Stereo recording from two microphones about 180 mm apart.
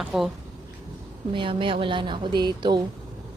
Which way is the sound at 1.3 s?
30° right (ahead or behind).